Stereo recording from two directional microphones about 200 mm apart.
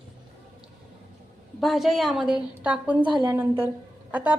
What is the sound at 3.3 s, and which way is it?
A woman's voice, 10° right (ahead or behind).